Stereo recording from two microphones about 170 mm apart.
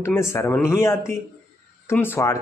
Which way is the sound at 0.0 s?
15° left (ahead or behind).